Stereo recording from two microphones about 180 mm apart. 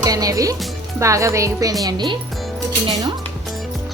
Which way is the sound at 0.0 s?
20° right (ahead or behind).